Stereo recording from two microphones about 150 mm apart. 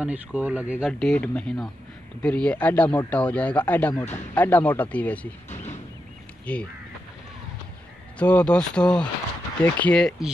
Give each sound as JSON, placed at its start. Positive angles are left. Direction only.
{"t": 0.0, "sound": "speech", "side_deg": -10}
{"t": 0.9, "sound": "speech", "side_deg": 5}
{"t": 5.5, "sound": "a sound", "side_deg": 50}
{"t": 6.4, "sound": "speech", "side_deg": 10}
{"t": 8.2, "sound": "speech", "side_deg": 10}